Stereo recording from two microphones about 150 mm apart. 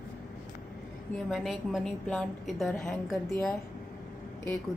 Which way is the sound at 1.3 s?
Centre (ahead or behind).